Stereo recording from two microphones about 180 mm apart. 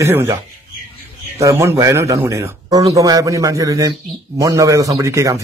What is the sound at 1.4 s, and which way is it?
A man's voice, 15° right (ahead or behind).